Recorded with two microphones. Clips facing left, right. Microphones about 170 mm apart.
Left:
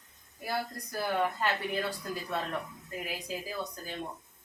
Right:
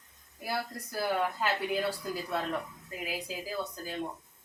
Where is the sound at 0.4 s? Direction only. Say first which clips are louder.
Even; 5° right (ahead or behind).